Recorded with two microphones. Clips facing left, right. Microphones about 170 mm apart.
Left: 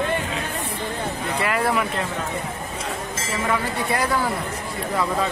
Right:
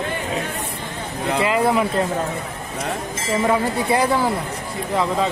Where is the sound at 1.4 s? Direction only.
20° right (ahead or behind).